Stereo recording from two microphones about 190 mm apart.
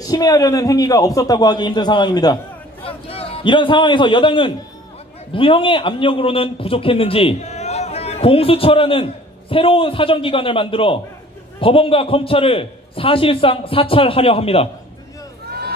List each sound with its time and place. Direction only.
0.0 s a man's voice: 20° left (ahead or behind)